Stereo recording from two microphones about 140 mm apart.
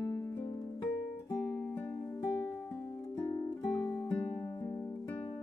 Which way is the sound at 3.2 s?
25° left (ahead or behind).